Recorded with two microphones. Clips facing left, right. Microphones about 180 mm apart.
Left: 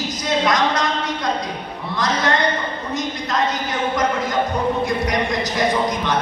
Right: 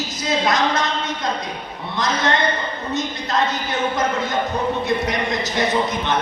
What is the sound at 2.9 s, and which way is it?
A woman's voice, 25° right (ahead or behind).